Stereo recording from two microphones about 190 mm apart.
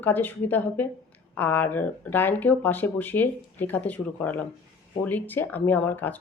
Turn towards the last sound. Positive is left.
turn(degrees=10)  # may be behind; listen again after turning